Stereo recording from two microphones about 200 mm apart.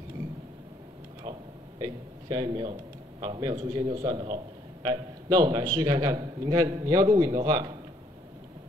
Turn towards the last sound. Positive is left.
turn(degrees=-20)  # may be behind; listen again after turning